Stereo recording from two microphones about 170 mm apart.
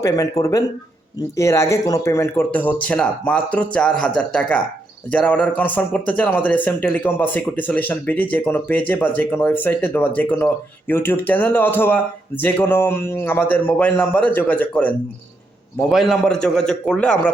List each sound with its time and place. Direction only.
0.0 s a man's voice: 20° left (ahead or behind)